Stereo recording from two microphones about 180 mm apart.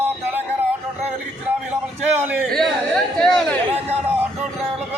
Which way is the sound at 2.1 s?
10° right (ahead or behind).